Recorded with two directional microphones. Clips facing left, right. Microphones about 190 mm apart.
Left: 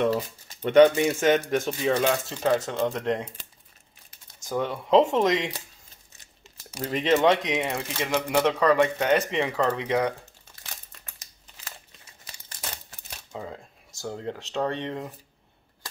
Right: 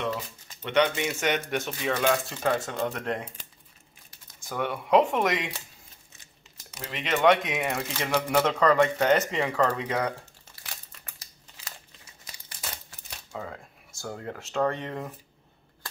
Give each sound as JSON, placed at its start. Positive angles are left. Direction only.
{"t": 0.7, "sound": "speech", "side_deg": 45}
{"t": 4.5, "sound": "speech", "side_deg": 25}
{"t": 6.7, "sound": "speech", "side_deg": 35}
{"t": 7.2, "sound": "speech", "side_deg": 25}
{"t": 13.3, "sound": "speech", "side_deg": 20}